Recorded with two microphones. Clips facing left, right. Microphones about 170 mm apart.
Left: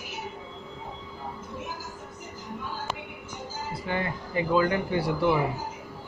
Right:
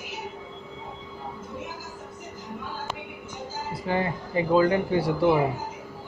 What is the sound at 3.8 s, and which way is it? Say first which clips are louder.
Speech: right 4 dB; 30° right (ahead or behind).